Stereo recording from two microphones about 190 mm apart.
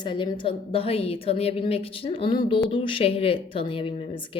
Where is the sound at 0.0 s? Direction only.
25° left (ahead or behind).